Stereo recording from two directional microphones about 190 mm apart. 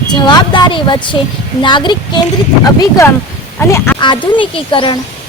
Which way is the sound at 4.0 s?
25° left (ahead or behind).